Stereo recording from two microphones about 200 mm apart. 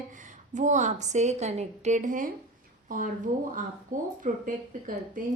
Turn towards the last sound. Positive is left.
turn(degrees=-45)  # may be behind; listen again after turning